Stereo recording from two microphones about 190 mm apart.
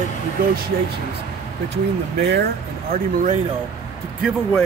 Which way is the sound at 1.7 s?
60° right (ahead or behind).